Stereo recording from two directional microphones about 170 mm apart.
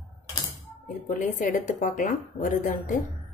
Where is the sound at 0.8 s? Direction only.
50° left (ahead or behind).